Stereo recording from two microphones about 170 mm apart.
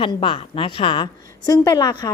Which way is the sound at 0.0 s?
30° left (ahead or behind).